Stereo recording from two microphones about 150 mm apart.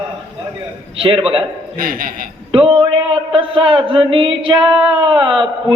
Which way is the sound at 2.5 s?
35° right (ahead or behind).